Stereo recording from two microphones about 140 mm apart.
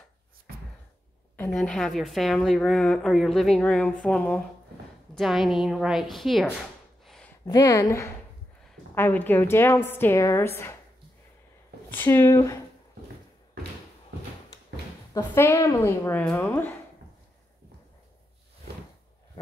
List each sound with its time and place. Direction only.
1.5 s a woman's voice: 5° left (ahead or behind)
7.4 s a woman's voice: 25° left (ahead or behind)
11.9 s a woman's voice: 15° left (ahead or behind)
15.1 s a woman's voice: 20° left (ahead or behind)